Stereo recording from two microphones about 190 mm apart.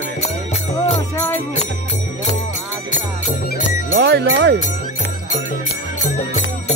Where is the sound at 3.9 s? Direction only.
65° right (ahead or behind).